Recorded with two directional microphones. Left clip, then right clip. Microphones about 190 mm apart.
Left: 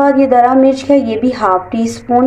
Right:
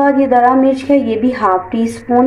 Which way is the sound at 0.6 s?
10° left (ahead or behind).